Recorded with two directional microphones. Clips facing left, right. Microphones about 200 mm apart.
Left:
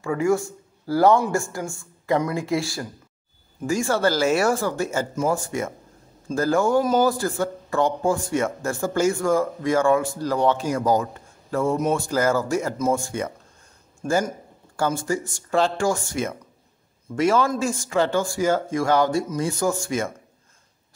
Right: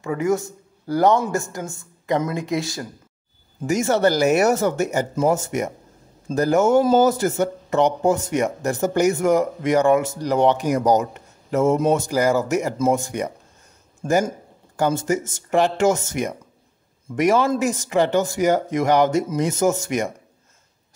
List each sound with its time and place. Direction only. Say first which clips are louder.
0.0 s speech: even; 20° right (ahead or behind)
14.9 s a man's voice: right 4 dB; 20° right (ahead or behind)